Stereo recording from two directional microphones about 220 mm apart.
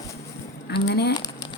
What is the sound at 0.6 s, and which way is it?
Speech, 50° left (ahead or behind).